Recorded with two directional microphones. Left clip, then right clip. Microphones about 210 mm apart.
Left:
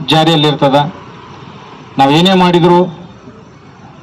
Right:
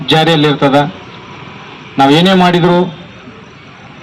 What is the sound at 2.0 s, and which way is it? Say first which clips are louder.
Speech: right 1 dB; 40° left (ahead or behind).